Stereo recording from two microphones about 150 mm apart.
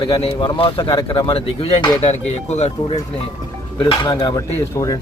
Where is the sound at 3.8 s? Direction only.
35° left (ahead or behind).